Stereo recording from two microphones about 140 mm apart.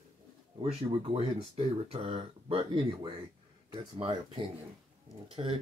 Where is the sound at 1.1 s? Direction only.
45° right (ahead or behind).